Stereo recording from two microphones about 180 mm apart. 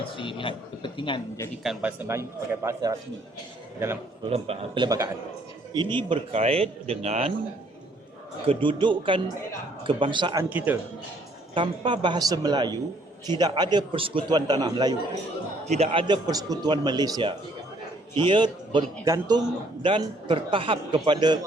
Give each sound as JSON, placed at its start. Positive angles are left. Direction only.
{"t": 0.2, "sound": "a man's voice", "side_deg": 30}
{"t": 1.6, "sound": "a man's voice", "side_deg": -5}
{"t": 4.3, "sound": "a man's voice", "side_deg": -30}
{"t": 8.4, "sound": "a man's voice", "side_deg": -25}
{"t": 10.7, "sound": "a man's voice", "side_deg": -10}
{"t": 11.5, "sound": "a man's voice", "side_deg": -25}
{"t": 15.6, "sound": "a man's voice", "side_deg": -35}